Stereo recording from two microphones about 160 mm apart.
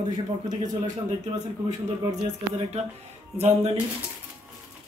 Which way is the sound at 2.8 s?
40° right (ahead or behind).